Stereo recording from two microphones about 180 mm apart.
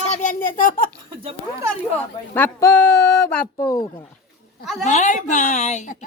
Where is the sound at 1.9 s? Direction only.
10° left (ahead or behind).